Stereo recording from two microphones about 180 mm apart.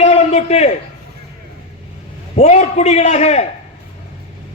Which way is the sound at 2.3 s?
40° left (ahead or behind).